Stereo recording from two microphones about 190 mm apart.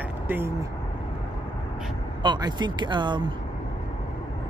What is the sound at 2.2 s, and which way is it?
Speech, 20° right (ahead or behind).